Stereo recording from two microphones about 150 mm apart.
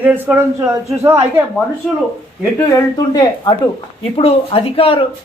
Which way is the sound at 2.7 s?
25° left (ahead or behind).